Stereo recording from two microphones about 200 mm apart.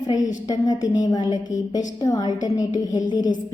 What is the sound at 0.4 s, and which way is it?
A woman's voice, 20° left (ahead or behind).